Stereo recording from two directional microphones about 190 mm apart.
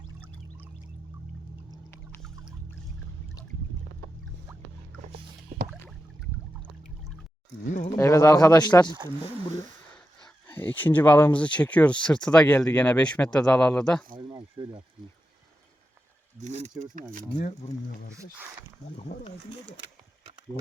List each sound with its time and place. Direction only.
7.7 s speech: 40° left (ahead or behind)
7.9 s speech: 15° left (ahead or behind)
10.4 s speech: 10° left (ahead or behind)
14.2 s a sound: 25° right (ahead or behind)
16.4 s speech: 35° right (ahead or behind)
18.9 s speech: 35° left (ahead or behind)